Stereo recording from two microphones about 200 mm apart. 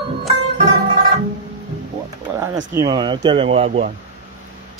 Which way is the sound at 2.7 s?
20° right (ahead or behind).